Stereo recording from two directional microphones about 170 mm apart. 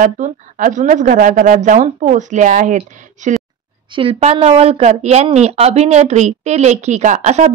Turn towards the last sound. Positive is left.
turn(degrees=-45)  # may be behind; listen again after turning